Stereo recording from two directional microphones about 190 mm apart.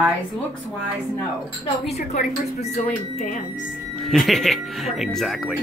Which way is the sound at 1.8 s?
35° left (ahead or behind).